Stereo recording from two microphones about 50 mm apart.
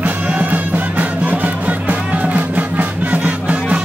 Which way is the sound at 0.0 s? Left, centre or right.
Right.